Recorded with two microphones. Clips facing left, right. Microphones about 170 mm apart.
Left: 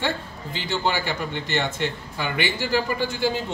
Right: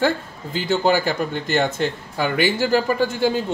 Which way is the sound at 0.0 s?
45° right (ahead or behind).